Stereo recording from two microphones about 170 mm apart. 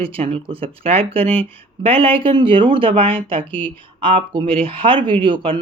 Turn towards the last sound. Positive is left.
turn(degrees=-30)  # may be behind; listen again after turning